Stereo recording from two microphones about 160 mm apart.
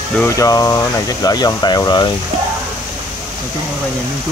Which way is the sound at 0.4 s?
20° left (ahead or behind).